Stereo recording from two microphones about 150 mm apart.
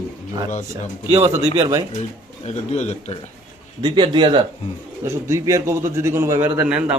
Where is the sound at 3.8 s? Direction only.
30° right (ahead or behind).